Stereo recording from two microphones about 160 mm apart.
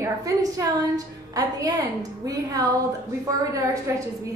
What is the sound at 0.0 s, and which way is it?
A woman's voice, 20° right (ahead or behind).